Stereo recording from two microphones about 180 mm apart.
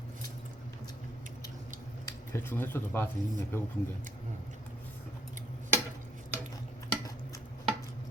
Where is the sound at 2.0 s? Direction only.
15° left (ahead or behind).